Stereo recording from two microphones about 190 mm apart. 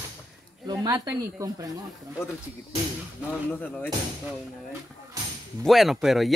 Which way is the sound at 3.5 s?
10° left (ahead or behind).